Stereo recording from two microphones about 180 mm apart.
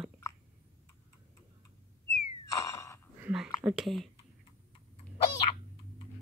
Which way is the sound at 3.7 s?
Centre (ahead or behind).